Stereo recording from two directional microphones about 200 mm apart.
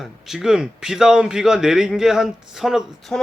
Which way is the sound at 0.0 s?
Centre (ahead or behind).